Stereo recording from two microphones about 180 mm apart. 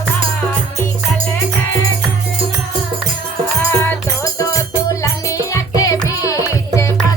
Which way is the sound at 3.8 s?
20° left (ahead or behind).